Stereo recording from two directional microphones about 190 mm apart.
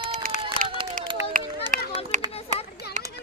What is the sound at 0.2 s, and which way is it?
Run, 45° right (ahead or behind).